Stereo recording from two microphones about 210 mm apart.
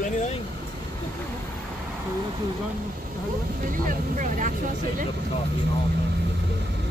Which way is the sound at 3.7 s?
40° right (ahead or behind).